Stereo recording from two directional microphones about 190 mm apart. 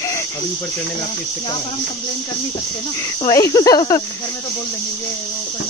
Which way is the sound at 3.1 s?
20° left (ahead or behind).